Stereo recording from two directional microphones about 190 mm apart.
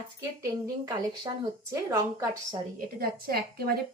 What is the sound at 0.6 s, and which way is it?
A woman's voice, 20° right (ahead or behind).